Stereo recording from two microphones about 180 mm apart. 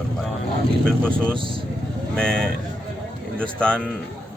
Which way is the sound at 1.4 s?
30° right (ahead or behind).